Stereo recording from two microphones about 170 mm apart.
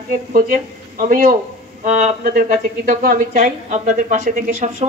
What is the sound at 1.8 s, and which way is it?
Speech, 40° right (ahead or behind).